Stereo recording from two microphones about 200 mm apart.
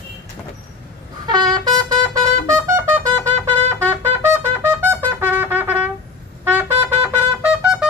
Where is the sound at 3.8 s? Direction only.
10° right (ahead or behind).